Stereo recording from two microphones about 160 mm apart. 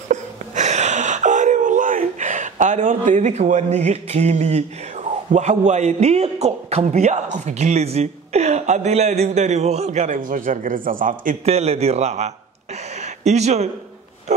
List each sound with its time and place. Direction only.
0.1 s wail: 45° right (ahead or behind)
7.3 s speech: 45° right (ahead or behind)
11.4 s a man's voice: 40° right (ahead or behind)
12.9 s a sound: 45° right (ahead or behind)